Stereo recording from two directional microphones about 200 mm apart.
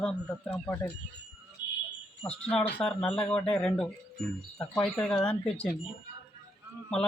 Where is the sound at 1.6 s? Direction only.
20° left (ahead or behind).